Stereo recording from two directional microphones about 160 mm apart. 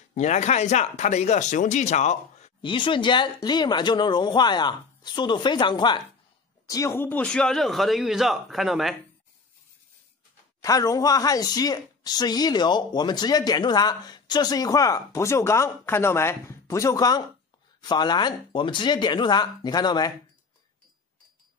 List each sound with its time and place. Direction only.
0.1 s speech: 45° left (ahead or behind)
2.6 s a man's voice: 30° left (ahead or behind); by 8.9 s centre (ahead or behind)
10.6 s speech: 20° left (ahead or behind)